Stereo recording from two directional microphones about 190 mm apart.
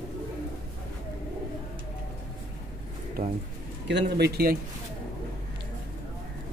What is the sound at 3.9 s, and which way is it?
Speech, 65° right (ahead or behind).